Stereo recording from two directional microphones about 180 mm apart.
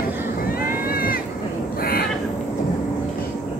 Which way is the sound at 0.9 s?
55° left (ahead or behind).